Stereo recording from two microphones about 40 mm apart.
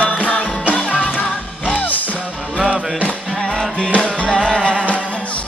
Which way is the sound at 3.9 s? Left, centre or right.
Left.